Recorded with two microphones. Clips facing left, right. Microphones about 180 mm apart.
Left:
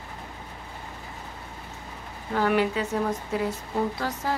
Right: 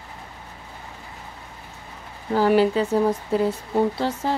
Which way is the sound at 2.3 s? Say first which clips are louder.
Right 6 dB; 30° right (ahead or behind).